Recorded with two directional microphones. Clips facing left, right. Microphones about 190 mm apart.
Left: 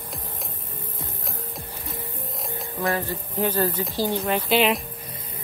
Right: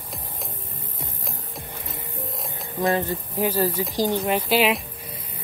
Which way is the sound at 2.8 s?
20° right (ahead or behind).